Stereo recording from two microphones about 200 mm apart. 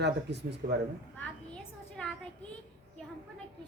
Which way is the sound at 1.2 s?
5° left (ahead or behind).